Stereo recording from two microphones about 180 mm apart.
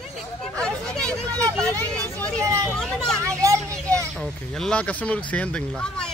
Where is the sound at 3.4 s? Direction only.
15° right (ahead or behind).